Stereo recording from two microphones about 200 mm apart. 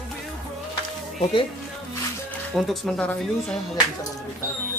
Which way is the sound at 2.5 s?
Centre (ahead or behind).